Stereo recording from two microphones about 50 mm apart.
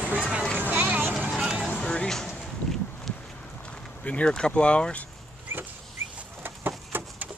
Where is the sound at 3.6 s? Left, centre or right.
Left.